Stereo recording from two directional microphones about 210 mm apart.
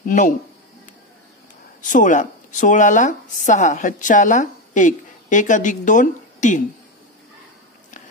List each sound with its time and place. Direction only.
0.0 s speech: 35° left (ahead or behind)
1.8 s speech: 35° left (ahead or behind)